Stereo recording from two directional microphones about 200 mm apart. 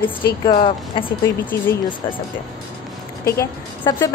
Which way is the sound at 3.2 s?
20° left (ahead or behind).